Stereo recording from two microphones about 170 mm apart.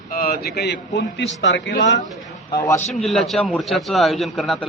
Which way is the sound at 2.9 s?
Centre (ahead or behind).